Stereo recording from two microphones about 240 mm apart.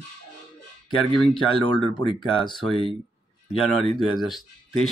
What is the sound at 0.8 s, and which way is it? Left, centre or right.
Speech, centre.